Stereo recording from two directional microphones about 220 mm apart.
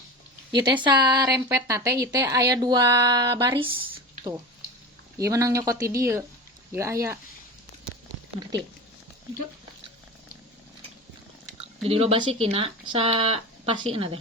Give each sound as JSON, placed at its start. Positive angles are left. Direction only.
{"t": 0.5, "sound": "a woman's voice", "side_deg": -20}
{"t": 11.9, "sound": "speech", "side_deg": -25}